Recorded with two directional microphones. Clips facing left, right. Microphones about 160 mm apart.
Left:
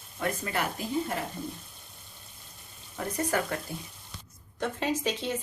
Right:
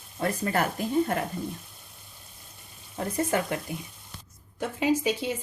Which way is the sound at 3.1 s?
20° right (ahead or behind).